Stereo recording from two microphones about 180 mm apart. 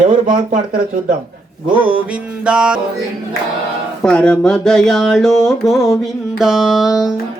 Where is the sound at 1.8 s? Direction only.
10° right (ahead or behind).